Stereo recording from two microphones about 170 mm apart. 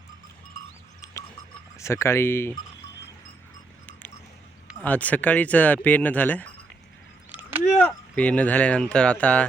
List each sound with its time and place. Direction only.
1.0 s a sound: 20° left (ahead or behind)
1.8 s speech: 15° left (ahead or behind)
4.8 s speech: 10° left (ahead or behind)
7.8 s speech: 10° left (ahead or behind)